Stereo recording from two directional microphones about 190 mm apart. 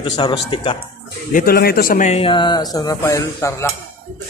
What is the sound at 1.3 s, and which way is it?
A man's voice, 50° left (ahead or behind).